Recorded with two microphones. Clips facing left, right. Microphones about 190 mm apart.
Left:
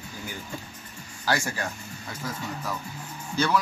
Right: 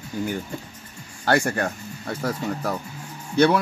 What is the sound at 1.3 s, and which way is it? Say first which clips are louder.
Speech: right 7 dB; 60° right (ahead or behind).